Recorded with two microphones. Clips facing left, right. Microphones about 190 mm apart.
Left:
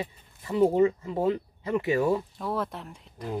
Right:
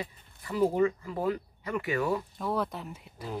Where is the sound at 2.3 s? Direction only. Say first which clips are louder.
Even; centre (ahead or behind).